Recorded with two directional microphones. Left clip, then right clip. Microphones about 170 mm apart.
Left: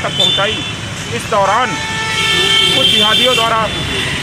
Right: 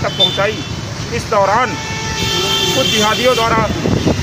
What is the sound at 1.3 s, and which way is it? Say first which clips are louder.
Speech: even; 20° right (ahead or behind).